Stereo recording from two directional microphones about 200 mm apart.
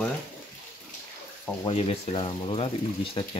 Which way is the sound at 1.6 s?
30° left (ahead or behind).